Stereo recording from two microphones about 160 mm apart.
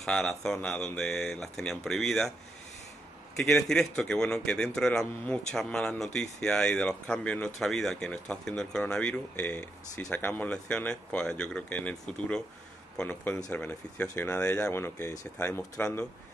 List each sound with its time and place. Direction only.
0.0 s a man's voice: 5° left (ahead or behind)
3.3 s a man's voice: 5° left (ahead or behind)